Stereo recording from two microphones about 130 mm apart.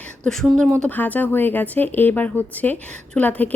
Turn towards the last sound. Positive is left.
turn(degrees=10)  # may be behind; listen again after turning